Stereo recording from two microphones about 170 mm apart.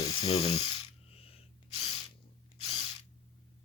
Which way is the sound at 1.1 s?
35° left (ahead or behind).